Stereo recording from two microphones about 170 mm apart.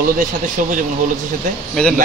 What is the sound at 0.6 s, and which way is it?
Speech, 50° right (ahead or behind).